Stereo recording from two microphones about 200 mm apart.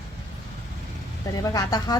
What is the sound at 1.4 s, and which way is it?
Speech, 20° left (ahead or behind).